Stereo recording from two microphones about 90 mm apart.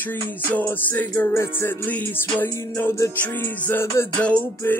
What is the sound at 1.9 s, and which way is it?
Music, 20° left (ahead or behind).